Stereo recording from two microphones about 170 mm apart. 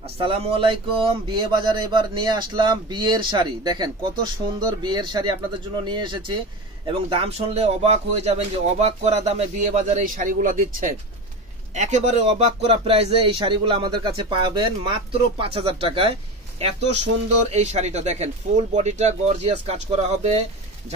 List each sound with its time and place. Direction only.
0.2 s speech: 30° right (ahead or behind)